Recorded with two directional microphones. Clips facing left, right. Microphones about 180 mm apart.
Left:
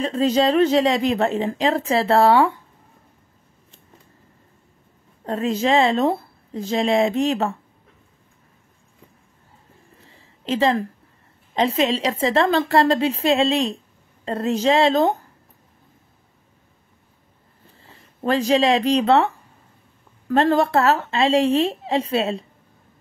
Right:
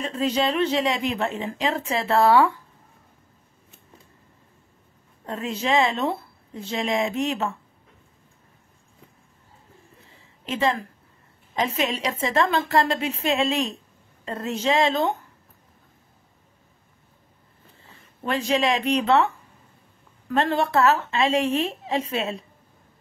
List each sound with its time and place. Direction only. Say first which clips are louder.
0.0 s a woman's voice: left 5 dB; 35° left (ahead or behind)
5.2 s a woman's voice: left 7 dB; 35° left (ahead or behind)
10.4 s a woman's voice: left 5 dB; 30° left (ahead or behind)
18.2 s a woman's voice: left 5 dB; 35° left (ahead or behind)
20.2 s a woman's voice: left 5 dB; 35° left (ahead or behind)